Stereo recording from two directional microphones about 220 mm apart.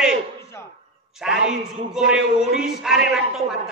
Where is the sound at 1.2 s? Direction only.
5° right (ahead or behind).